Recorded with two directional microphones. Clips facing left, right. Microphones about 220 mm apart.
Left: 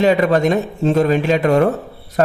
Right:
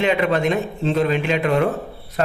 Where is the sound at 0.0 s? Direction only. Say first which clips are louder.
Left 5 dB; 40° left (ahead or behind).